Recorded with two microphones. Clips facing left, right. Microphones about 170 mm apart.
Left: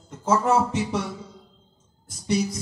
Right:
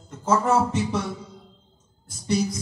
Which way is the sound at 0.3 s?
15° left (ahead or behind).